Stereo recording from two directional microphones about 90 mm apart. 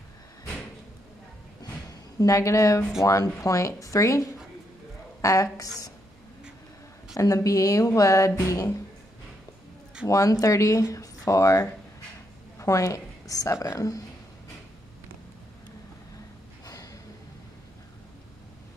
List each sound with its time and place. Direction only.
1.6 s a sound: 40° left (ahead or behind)
3.0 s speech: 35° left (ahead or behind)
7.2 s speech: 40° left (ahead or behind)
10.0 s a woman's voice: 40° left (ahead or behind)
16.6 s gasp: 40° left (ahead or behind)